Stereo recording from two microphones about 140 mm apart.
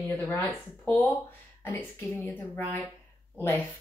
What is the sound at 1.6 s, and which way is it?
Speech, 15° left (ahead or behind).